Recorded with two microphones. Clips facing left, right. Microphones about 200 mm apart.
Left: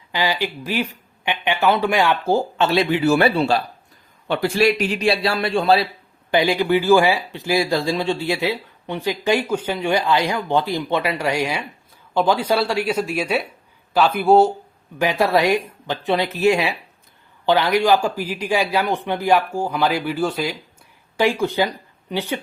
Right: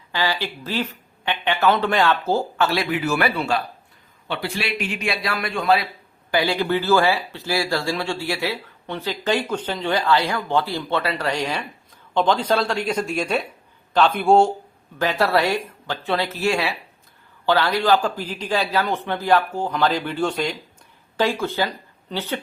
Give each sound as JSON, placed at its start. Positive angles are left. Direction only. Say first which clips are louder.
{"t": 0.1, "sound": "speech", "louder": "left 2 dB", "side_deg": 15}
{"t": 4.3, "sound": "a man's voice", "louder": "left 9 dB", "side_deg": 45}
{"t": 6.3, "sound": "a man's voice", "louder": "left 3 dB", "side_deg": 20}
{"t": 14.9, "sound": "speech", "louder": "left 2 dB", "side_deg": 15}